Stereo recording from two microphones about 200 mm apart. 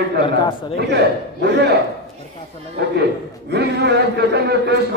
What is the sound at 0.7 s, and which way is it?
A man's voice, 55° right (ahead or behind).